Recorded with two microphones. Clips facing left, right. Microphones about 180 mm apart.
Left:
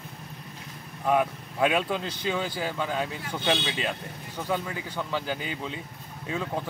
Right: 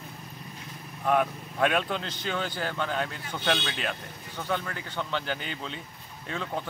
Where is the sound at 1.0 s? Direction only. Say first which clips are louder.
Left 1 dB; 5° left (ahead or behind).